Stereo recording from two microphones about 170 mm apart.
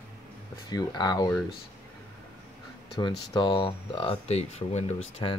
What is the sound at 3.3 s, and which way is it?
Speech, 30° left (ahead or behind).